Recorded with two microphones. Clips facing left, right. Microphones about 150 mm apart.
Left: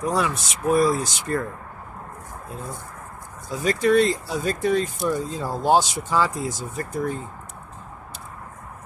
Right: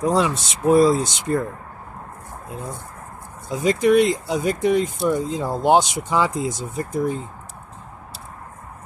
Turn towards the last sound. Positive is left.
turn(degrees=-20)  # may be behind; listen again after turning